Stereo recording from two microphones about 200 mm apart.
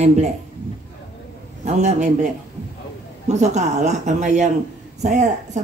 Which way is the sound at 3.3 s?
35° right (ahead or behind).